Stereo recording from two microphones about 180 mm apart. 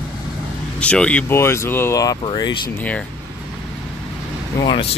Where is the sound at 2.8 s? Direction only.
10° left (ahead or behind).